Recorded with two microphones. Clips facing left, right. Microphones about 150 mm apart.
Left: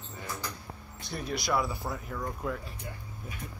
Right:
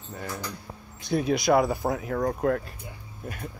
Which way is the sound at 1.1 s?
90° right.